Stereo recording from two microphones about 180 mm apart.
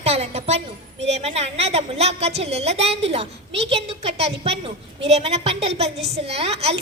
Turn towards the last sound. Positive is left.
turn(degrees=-35)  # may be behind; listen again after turning